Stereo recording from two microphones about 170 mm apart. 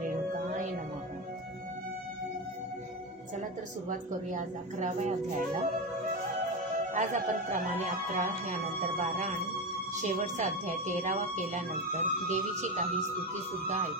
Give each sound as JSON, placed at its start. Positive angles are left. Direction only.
{"t": 0.0, "sound": "music", "side_deg": -45}
{"t": 3.9, "sound": "speech", "side_deg": -45}
{"t": 6.9, "sound": "speech", "side_deg": -45}